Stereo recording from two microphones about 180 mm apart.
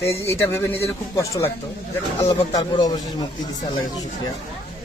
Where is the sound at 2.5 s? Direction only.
20° left (ahead or behind).